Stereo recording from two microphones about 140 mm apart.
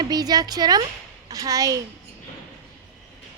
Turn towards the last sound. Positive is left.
turn(degrees=-25)  # may be behind; listen again after turning